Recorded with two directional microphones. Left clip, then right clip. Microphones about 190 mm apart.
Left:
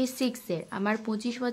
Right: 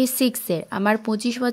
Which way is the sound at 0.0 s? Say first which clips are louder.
Right 8 dB; 40° right (ahead or behind).